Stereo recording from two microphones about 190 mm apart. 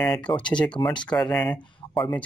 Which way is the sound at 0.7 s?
25° left (ahead or behind).